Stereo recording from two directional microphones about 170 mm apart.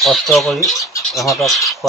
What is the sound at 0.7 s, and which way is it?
Speech, 20° left (ahead or behind).